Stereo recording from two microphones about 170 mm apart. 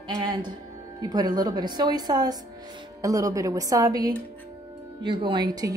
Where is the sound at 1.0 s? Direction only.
25° right (ahead or behind).